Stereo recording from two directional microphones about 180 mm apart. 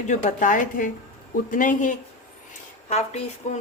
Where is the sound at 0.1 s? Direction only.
45° left (ahead or behind).